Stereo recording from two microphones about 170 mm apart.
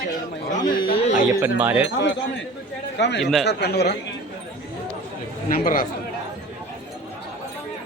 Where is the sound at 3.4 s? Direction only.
70° left (ahead or behind).